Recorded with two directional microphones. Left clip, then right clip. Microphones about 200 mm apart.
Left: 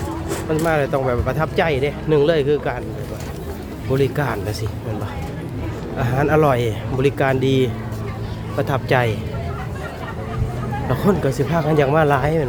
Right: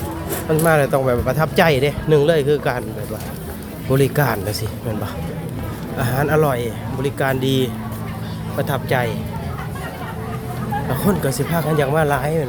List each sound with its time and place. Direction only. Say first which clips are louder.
0.6 s speech: right 3 dB; 15° right (ahead or behind)
2.0 s speech: right 1 dB; centre (ahead or behind)
3.9 s speech: right 2 dB; 15° right (ahead or behind)
6.0 s speech: left 1 dB; 10° left (ahead or behind); by 7.3 s 25° left (ahead or behind)
7.3 s speech: left 1 dB; 10° left (ahead or behind)
10.8 s speech: left 3 dB; 15° left (ahead or behind)